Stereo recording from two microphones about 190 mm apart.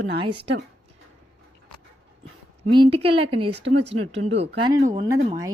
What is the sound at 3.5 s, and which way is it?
Speech, 65° right (ahead or behind).